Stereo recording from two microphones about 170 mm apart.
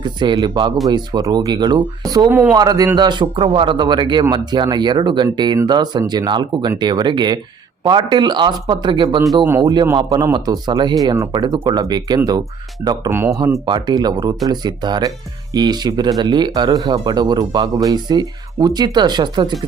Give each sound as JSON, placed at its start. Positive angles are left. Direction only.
{"t": 0.0, "sound": "a man's voice", "side_deg": -25}
{"t": 2.3, "sound": "a man's voice", "side_deg": -10}
{"t": 13.1, "sound": "a man's voice", "side_deg": -15}